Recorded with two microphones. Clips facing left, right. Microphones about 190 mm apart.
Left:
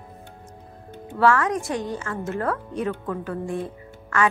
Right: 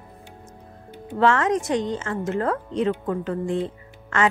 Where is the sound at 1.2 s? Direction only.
20° right (ahead or behind).